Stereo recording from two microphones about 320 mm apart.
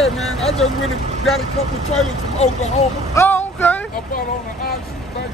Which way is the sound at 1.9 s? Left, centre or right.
Left.